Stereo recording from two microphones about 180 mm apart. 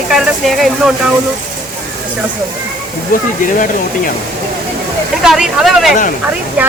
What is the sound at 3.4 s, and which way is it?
Speech, 50° left (ahead or behind).